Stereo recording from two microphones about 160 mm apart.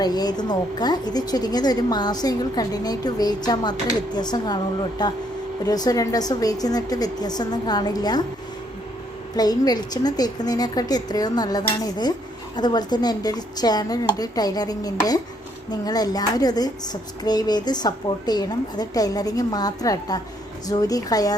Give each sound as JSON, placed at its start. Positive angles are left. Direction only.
{"t": 0.0, "sound": "a woman's voice", "side_deg": 25}
{"t": 9.3, "sound": "a woman's voice", "side_deg": 25}